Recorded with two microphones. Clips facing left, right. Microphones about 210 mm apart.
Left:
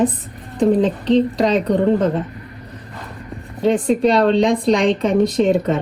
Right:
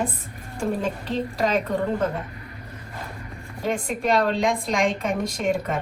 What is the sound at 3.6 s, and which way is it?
Speech, 25° left (ahead or behind).